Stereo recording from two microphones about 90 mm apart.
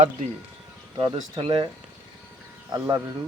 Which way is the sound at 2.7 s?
30° right (ahead or behind).